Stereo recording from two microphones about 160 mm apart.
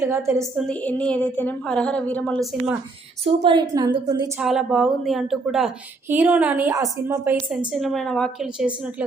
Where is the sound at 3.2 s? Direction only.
30° right (ahead or behind).